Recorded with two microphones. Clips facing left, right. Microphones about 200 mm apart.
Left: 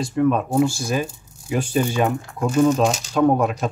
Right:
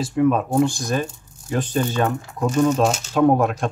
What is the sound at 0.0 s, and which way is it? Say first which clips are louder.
Speech: right 1 dB; centre (ahead or behind).